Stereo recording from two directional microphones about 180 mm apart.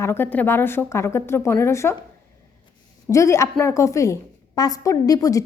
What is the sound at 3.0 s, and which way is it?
A woman's voice, 15° left (ahead or behind).